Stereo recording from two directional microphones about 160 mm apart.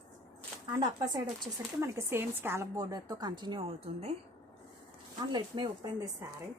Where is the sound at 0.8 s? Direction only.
25° right (ahead or behind).